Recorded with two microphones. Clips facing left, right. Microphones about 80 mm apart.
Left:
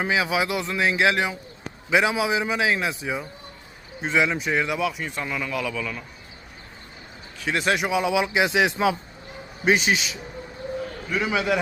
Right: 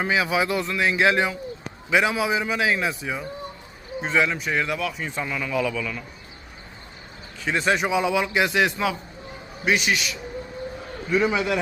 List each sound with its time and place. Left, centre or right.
0.0 s a man's voice: centre
7.3 s a man's voice: centre; by 10.2 s left
11.3 s a man's voice: centre